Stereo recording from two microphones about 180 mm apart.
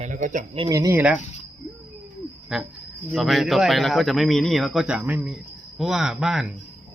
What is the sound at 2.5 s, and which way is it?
Speech, centre (ahead or behind).